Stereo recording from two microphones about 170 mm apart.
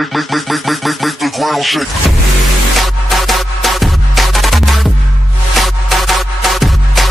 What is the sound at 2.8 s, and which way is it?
Music, centre (ahead or behind).